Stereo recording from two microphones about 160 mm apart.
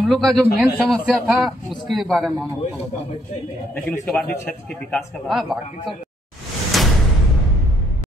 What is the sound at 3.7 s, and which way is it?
A man's voice, 10° left (ahead or behind).